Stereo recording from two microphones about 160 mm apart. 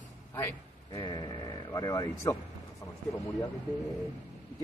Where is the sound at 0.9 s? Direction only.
25° left (ahead or behind).